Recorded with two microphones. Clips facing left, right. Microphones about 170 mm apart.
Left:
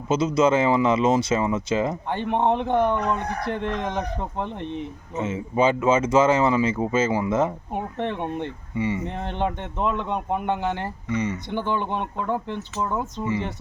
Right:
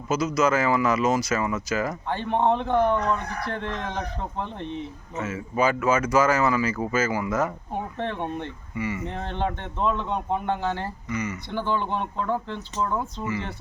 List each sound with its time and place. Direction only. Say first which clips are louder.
0.1 s a man's voice: left 3 dB; 25° left (ahead or behind)
5.2 s speech: left 3 dB; 25° left (ahead or behind)
7.7 s a man's voice: left 2 dB; 15° left (ahead or behind)
8.7 s speech: left 4 dB; 25° left (ahead or behind)
9.0 s a man's voice: left 2 dB; 15° left (ahead or behind)
11.1 s speech: left 5 dB; 30° left (ahead or behind)
11.5 s a man's voice: right 1 dB; 15° left (ahead or behind)